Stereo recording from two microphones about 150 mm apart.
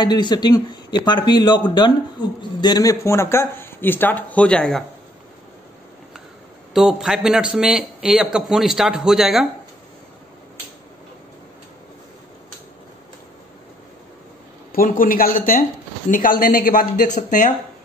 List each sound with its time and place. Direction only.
0.0 s speech: 30° left (ahead or behind); by 4.8 s 5° left (ahead or behind)
6.7 s a man's voice: 5° right (ahead or behind)
14.7 s speech: 70° left (ahead or behind)